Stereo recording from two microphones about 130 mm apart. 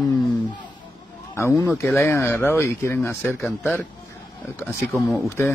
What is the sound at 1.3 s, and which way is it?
Speech, 20° left (ahead or behind).